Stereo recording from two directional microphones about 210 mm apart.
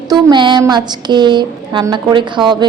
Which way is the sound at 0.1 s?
20° right (ahead or behind).